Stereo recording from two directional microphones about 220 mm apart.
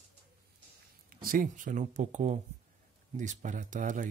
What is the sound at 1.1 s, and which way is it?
Speech, 40° right (ahead or behind).